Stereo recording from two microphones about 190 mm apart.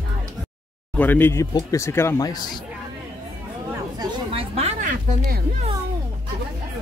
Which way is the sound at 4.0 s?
30° right (ahead or behind).